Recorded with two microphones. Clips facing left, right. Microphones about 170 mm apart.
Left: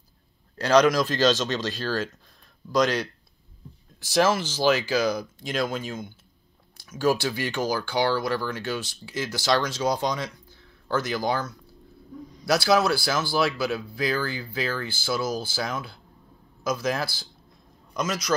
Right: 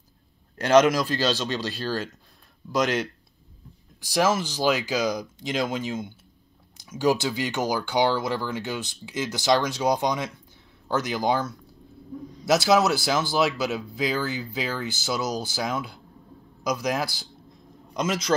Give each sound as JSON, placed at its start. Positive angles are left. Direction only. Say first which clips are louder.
{"t": 0.6, "sound": "speech", "louder": "right 1 dB", "side_deg": -20}
{"t": 1.0, "sound": "speech", "louder": "left 3 dB", "side_deg": -10}
{"t": 4.0, "sound": "speech", "louder": "left 1 dB", "side_deg": -15}